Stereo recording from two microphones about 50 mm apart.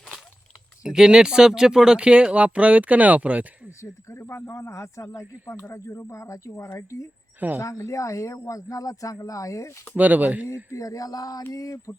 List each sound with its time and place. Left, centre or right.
0.9 s speech: centre
3.8 s speech: left
7.3 s speech: right
7.6 s speech: left
9.9 s speech: right
11.9 s a sound: left